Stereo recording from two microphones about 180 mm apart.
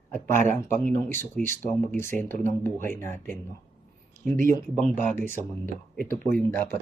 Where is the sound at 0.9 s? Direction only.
10° left (ahead or behind).